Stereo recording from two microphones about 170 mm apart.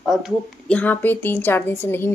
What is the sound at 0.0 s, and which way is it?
A woman's voice, centre (ahead or behind).